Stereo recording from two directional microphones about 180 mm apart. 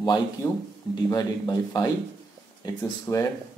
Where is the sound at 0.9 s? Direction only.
25° left (ahead or behind).